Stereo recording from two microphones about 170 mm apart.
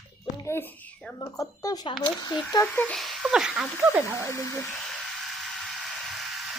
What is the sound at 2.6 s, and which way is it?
Speech, 5° left (ahead or behind).